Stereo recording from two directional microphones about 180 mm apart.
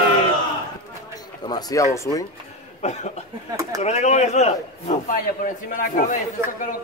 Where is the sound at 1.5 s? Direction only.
20° left (ahead or behind).